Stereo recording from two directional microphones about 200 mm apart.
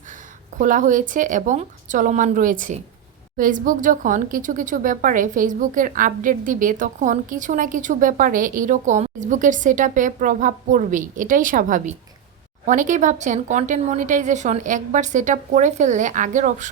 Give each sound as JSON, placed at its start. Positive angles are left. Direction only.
{"t": 0.6, "sound": "speech", "side_deg": -40}